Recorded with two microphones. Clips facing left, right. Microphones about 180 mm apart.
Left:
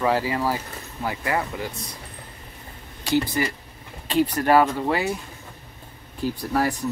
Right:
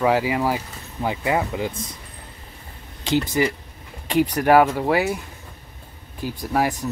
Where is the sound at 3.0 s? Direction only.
20° right (ahead or behind).